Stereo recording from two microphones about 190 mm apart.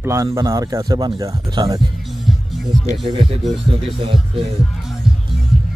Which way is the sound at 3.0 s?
30° right (ahead or behind).